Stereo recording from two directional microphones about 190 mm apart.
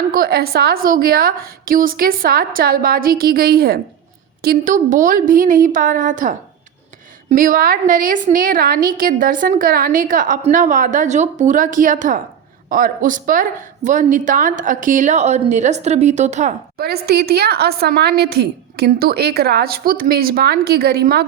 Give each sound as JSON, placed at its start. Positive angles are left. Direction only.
{"t": 0.1, "sound": "a woman's voice", "side_deg": -55}
{"t": 16.7, "sound": "a woman's voice", "side_deg": -55}